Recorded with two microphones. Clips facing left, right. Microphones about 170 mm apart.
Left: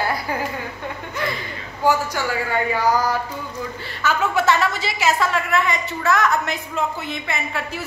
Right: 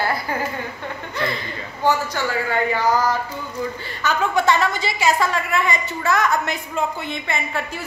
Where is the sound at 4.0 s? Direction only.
5° left (ahead or behind).